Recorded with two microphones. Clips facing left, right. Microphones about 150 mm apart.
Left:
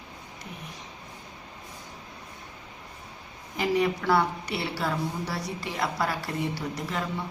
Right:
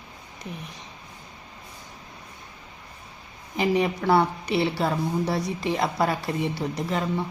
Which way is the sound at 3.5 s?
20° right (ahead or behind).